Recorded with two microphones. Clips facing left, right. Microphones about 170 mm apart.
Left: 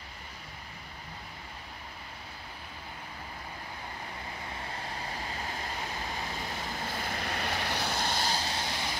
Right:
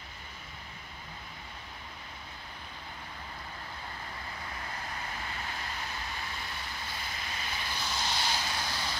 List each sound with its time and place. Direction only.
6.5 s vehicle: 45° left (ahead or behind); by 8.9 s 25° left (ahead or behind)